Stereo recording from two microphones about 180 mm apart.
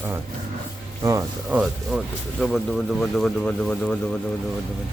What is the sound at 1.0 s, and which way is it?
Speech, 15° right (ahead or behind).